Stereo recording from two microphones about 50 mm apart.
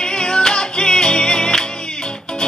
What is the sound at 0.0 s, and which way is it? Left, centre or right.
Music, centre.